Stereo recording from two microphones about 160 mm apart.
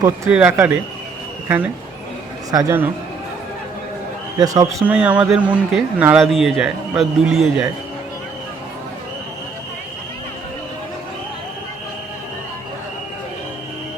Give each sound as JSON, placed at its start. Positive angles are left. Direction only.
{"t": 0.3, "sound": "speech", "side_deg": -10}
{"t": 2.5, "sound": "speech", "side_deg": -20}
{"t": 4.4, "sound": "a man's voice", "side_deg": -20}
{"t": 4.9, "sound": "a man's voice", "side_deg": -10}